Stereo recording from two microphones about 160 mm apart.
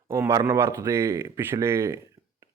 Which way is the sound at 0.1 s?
15° right (ahead or behind).